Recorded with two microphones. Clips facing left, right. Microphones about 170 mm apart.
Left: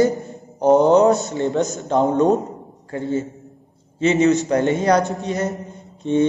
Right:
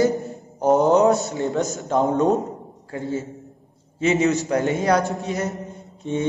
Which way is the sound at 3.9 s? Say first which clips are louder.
Left 3 dB; 5° right (ahead or behind).